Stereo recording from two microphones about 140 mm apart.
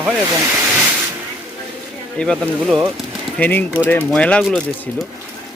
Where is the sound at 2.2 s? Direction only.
5° left (ahead or behind).